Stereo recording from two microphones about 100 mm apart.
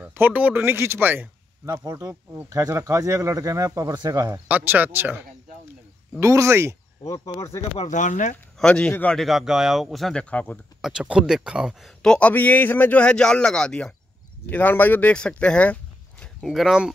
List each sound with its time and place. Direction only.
0.0 s speech: 15° right (ahead or behind)
1.7 s speech: 35° right (ahead or behind)
4.5 s speech: 15° right (ahead or behind)
6.1 s speech: 30° right (ahead or behind)
7.0 s speech: 35° left (ahead or behind)
8.5 s speech: 10° left (ahead or behind)
10.3 s speech: 15° left (ahead or behind)
10.8 s speech: 10° right (ahead or behind)
12.0 s speech: 10° left (ahead or behind)
16.3 s speech: centre (ahead or behind)